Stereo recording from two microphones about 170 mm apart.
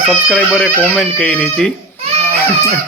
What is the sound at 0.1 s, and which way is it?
Speech, 5° left (ahead or behind).